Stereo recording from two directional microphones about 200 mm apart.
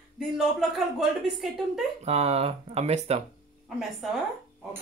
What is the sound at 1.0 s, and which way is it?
Speech, centre (ahead or behind).